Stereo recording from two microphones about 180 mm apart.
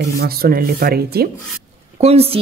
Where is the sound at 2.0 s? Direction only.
35° right (ahead or behind).